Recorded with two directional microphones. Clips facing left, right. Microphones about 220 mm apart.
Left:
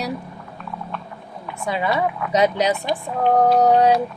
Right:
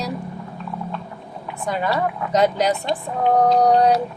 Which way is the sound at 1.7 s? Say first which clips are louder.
Even; 5° left (ahead or behind).